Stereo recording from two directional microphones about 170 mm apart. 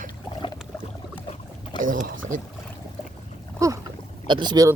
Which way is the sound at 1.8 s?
50° right (ahead or behind).